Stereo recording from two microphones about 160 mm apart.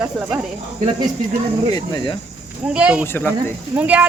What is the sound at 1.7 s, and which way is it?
Speech, 25° left (ahead or behind).